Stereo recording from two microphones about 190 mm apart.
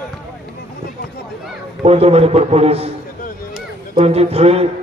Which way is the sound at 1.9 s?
30° right (ahead or behind).